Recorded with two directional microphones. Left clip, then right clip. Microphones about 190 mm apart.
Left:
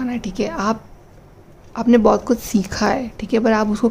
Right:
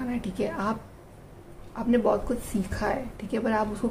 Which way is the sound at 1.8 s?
50° left (ahead or behind).